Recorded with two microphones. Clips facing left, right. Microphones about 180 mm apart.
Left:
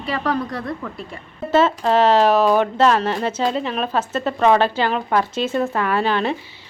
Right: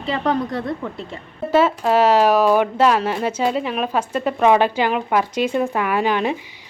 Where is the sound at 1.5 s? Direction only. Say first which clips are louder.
Even; 10° right (ahead or behind).